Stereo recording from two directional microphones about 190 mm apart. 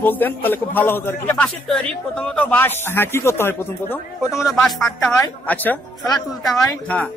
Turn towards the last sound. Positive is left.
turn(degrees=5)  # may be behind; listen again after turning